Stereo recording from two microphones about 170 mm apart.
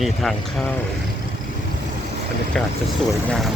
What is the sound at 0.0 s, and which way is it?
Speech, centre (ahead or behind).